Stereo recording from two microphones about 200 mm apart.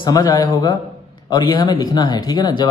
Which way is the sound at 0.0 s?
20° left (ahead or behind).